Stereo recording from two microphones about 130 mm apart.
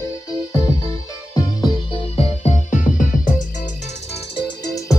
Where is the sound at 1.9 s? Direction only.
50° left (ahead or behind); by 3.7 s 90° left.